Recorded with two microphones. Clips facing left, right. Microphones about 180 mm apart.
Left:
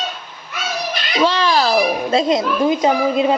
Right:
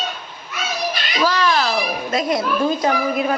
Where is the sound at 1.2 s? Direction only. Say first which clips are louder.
Left 2 dB; 30° left (ahead or behind).